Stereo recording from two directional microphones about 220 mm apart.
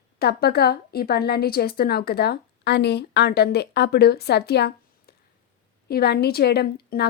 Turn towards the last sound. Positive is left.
turn(degrees=45)  # may be behind; listen again after turning